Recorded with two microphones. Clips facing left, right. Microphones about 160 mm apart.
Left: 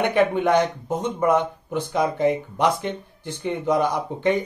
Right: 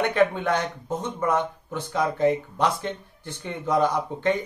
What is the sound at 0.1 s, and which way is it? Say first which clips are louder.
Speech: left 3 dB; 15° left (ahead or behind).